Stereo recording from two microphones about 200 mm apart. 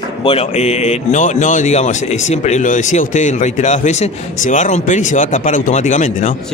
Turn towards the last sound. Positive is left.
turn(degrees=35)  # may be behind; listen again after turning